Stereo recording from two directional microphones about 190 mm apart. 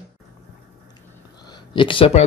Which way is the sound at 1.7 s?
25° left (ahead or behind).